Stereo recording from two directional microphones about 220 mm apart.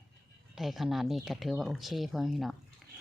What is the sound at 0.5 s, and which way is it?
Speech, centre (ahead or behind).